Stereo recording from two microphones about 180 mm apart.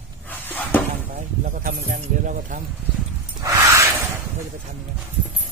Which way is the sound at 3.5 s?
15° right (ahead or behind).